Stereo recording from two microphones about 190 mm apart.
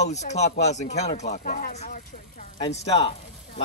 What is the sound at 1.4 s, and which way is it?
Speech, 50° left (ahead or behind).